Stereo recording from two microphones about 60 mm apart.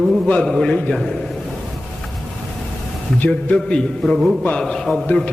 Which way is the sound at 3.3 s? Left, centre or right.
Centre.